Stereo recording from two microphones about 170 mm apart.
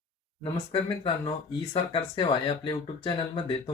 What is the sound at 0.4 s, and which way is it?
Speech, 30° left (ahead or behind).